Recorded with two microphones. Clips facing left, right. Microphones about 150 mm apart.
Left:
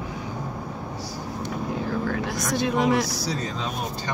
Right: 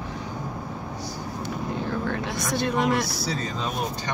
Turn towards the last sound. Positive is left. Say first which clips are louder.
# left 2 dB
turn(degrees=0)  # may be behind; listen again after turning